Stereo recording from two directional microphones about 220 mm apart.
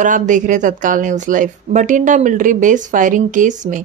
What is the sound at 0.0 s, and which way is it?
Speech, 35° right (ahead or behind).